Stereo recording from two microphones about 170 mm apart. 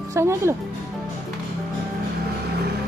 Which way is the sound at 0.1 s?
15° right (ahead or behind).